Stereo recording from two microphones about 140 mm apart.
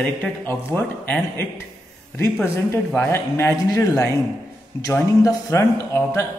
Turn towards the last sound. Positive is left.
turn(degrees=20)  # may be behind; listen again after turning